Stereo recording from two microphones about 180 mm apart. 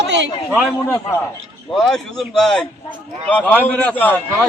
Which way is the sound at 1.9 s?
Centre (ahead or behind).